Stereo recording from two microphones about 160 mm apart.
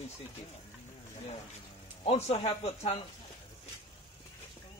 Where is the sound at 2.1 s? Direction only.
40° left (ahead or behind).